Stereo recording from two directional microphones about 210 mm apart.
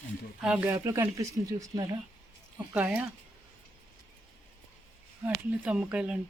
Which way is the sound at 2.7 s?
5° right (ahead or behind).